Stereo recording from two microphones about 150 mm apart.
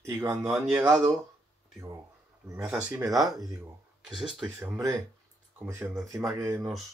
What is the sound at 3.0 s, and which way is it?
Speech, 25° right (ahead or behind).